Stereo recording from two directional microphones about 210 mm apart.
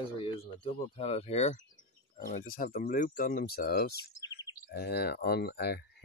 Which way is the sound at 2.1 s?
45° left (ahead or behind).